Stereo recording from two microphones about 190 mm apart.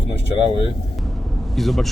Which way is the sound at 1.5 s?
Centre (ahead or behind).